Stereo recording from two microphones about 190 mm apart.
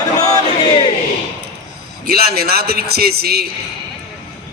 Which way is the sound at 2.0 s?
55° right (ahead or behind).